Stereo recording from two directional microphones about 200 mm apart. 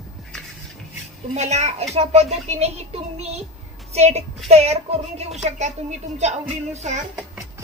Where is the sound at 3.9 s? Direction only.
35° right (ahead or behind).